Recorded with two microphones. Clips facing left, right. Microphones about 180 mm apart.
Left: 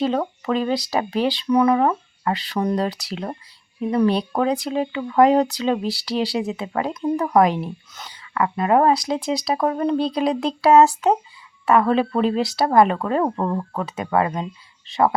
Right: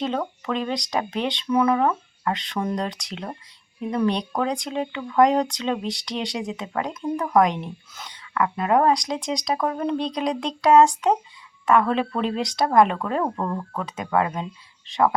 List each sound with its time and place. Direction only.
0.4 s speech: 5° left (ahead or behind)
13.2 s speech: 15° left (ahead or behind)
13.7 s speech: 5° left (ahead or behind)